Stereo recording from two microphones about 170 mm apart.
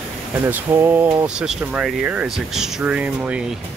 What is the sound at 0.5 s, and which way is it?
Speech, 10° right (ahead or behind).